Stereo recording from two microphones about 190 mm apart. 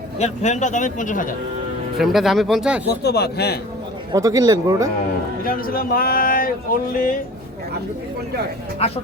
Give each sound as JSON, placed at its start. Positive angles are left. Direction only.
{"t": 0.2, "sound": "a man's voice", "side_deg": 35}
{"t": 2.0, "sound": "speech", "side_deg": 0}
{"t": 2.8, "sound": "speech", "side_deg": 60}
{"t": 4.1, "sound": "speech", "side_deg": -20}
{"t": 5.5, "sound": "speech", "side_deg": 50}